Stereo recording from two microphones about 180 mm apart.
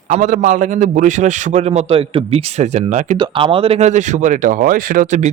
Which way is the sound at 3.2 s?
30° right (ahead or behind).